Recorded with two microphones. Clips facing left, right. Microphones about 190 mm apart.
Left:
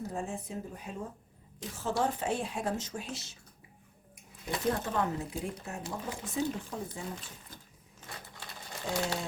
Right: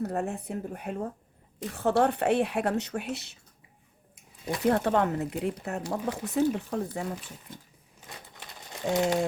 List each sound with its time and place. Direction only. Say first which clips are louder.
0.0 s a woman's voice: right 6 dB; 65° right (ahead or behind)
4.7 s speech: right 8 dB; 70° right (ahead or behind)
8.0 s crumpling: even; 20° right (ahead or behind)